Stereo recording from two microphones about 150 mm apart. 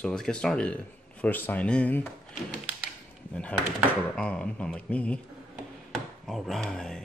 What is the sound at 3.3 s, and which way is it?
Speech, 10° left (ahead or behind).